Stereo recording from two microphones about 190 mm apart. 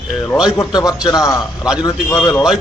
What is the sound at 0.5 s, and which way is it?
A man's voice, 15° left (ahead or behind).